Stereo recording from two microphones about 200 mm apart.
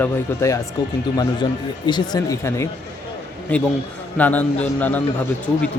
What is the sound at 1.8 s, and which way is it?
Speech, 20° left (ahead or behind).